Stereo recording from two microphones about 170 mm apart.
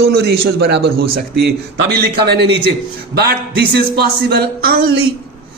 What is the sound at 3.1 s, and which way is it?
A man's voice, 70° right (ahead or behind).